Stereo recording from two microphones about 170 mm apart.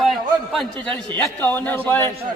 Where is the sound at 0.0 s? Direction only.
Centre (ahead or behind).